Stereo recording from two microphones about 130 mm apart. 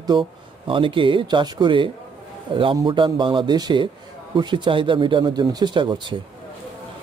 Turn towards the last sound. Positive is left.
turn(degrees=-35)  # may be behind; listen again after turning